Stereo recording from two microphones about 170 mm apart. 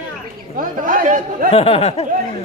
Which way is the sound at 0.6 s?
55° right (ahead or behind).